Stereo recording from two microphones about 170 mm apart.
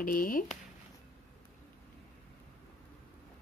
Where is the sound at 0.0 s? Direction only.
55° left (ahead or behind).